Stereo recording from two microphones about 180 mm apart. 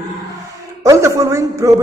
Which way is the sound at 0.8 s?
15° right (ahead or behind).